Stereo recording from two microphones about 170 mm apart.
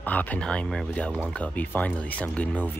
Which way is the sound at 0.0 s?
10° left (ahead or behind).